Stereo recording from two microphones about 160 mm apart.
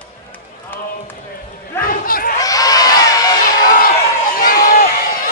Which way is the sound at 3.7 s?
65° left (ahead or behind).